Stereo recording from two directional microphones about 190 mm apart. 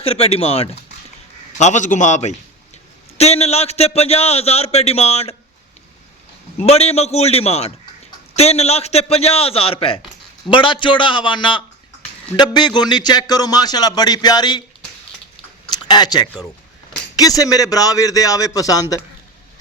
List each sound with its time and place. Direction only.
0.0 s speech: 30° left (ahead or behind)
6.6 s a man's voice: 35° left (ahead or behind)
15.7 s a man's voice: 20° left (ahead or behind)